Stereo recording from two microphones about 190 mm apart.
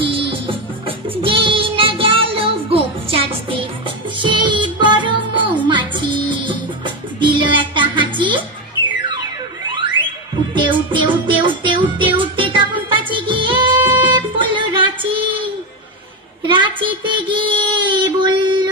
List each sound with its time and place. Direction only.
0.3 s music: 30° right (ahead or behind)
10.5 s music: 25° right (ahead or behind)
12.9 s child singing: 25° right (ahead or behind)
16.4 s child singing: 25° right (ahead or behind)